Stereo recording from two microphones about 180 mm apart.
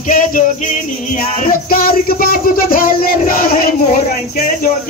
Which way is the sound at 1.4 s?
50° left (ahead or behind).